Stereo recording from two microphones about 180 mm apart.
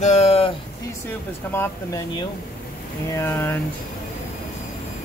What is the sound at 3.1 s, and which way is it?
Speech, 15° left (ahead or behind).